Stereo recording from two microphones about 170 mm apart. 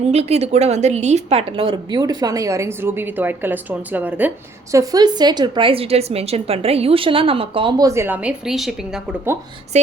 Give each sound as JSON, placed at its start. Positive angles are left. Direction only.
{"t": 0.1, "sound": "a woman's voice", "side_deg": -40}
{"t": 4.7, "sound": "a woman's voice", "side_deg": -20}
{"t": 9.7, "sound": "speech", "side_deg": -40}